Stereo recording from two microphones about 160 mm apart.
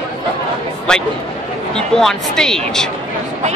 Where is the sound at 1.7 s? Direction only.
5° left (ahead or behind).